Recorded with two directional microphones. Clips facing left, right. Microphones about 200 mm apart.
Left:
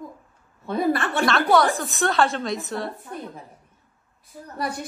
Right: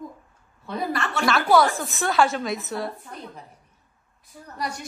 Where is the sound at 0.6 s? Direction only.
50° left (ahead or behind).